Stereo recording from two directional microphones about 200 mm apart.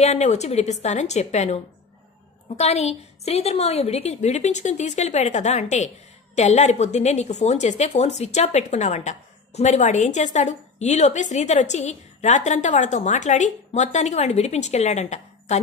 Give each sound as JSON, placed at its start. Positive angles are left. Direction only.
{"t": 0.0, "sound": "a woman's voice", "side_deg": 35}